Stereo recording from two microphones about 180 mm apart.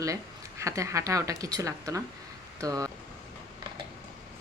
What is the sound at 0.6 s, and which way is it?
Speech, 15° right (ahead or behind).